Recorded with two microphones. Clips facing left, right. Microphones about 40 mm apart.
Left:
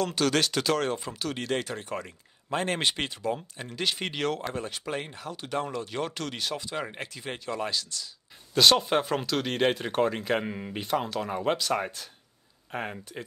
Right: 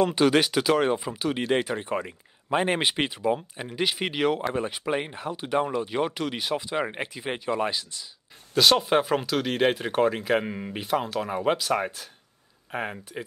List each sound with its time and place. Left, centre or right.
0.0 s speech: centre
8.5 s speech: centre